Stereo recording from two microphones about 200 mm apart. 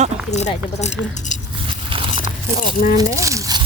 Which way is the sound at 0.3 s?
35° left (ahead or behind).